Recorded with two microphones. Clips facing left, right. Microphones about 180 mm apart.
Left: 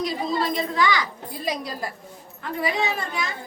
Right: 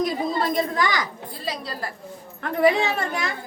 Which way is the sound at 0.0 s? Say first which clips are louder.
Right 2 dB; 50° right (ahead or behind).